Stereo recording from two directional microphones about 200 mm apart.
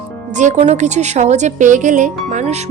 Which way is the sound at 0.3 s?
35° right (ahead or behind).